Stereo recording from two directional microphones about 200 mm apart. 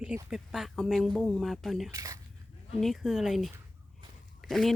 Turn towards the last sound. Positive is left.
turn(degrees=0)  # may be behind; listen again after turning